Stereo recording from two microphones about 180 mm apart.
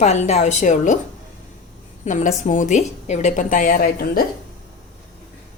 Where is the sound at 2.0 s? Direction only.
45° left (ahead or behind).